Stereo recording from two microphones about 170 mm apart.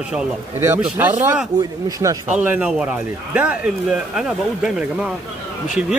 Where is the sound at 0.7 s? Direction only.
10° right (ahead or behind).